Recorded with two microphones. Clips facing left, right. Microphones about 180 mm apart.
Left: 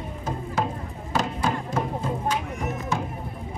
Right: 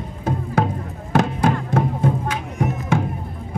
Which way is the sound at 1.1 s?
55° right (ahead or behind).